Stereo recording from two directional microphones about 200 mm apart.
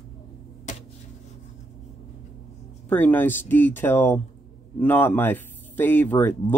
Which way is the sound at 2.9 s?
10° left (ahead or behind).